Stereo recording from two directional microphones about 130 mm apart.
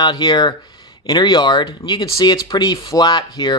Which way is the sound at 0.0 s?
35° left (ahead or behind).